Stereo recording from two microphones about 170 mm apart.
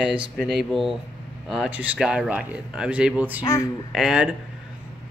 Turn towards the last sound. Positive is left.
turn(degrees=-5)  # may be behind; listen again after turning